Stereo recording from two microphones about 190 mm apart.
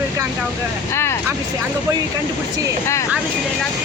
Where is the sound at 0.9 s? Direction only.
15° left (ahead or behind).